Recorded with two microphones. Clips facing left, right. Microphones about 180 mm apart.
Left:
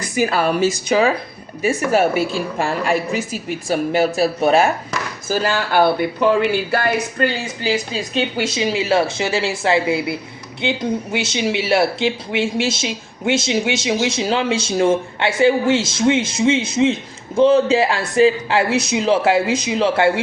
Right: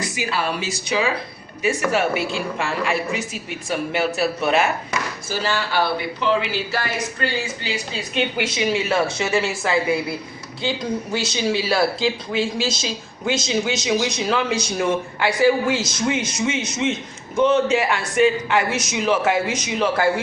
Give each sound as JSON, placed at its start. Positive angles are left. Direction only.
{"t": 0.0, "sound": "a woman's voice", "side_deg": 45}
{"t": 5.3, "sound": "a woman's voice", "side_deg": 50}